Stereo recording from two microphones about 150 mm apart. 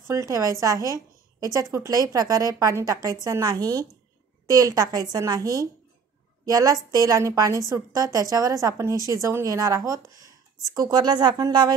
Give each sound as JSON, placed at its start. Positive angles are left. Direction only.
{"t": 0.1, "sound": "a woman's voice", "side_deg": -20}
{"t": 8.9, "sound": "speech", "side_deg": 25}
{"t": 9.2, "sound": "a woman's voice", "side_deg": -20}